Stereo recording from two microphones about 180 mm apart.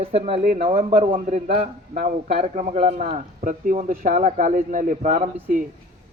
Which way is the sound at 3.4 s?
45° right (ahead or behind).